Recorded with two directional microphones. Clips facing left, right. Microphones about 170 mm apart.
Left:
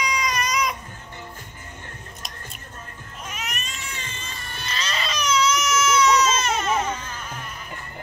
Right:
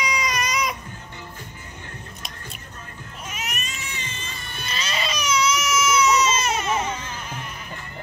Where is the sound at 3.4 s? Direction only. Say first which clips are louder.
Right 1 dB; 5° right (ahead or behind).